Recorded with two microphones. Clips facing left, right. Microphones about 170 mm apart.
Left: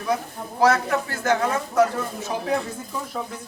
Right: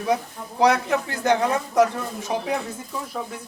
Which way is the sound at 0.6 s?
20° right (ahead or behind).